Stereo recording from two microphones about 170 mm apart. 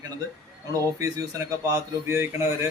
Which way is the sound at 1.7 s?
15° right (ahead or behind).